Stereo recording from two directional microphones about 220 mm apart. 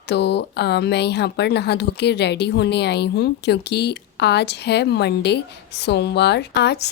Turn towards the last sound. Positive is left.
turn(degrees=50)  # may be behind; listen again after turning